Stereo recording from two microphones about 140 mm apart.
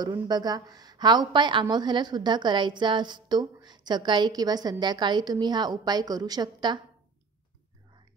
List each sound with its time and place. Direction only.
0.0 s a woman's voice: 30° right (ahead or behind)